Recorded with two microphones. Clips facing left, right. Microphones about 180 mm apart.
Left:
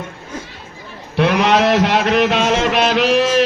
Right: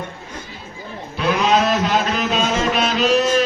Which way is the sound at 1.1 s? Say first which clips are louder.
Left 3 dB; 70° left (ahead or behind).